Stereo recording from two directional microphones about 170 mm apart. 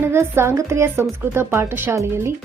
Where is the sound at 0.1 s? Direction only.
15° right (ahead or behind).